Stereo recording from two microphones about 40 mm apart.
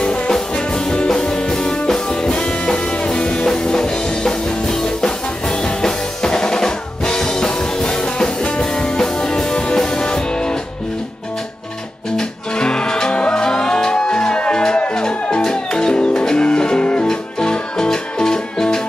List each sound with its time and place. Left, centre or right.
0.0 s music: left
12.2 s music: left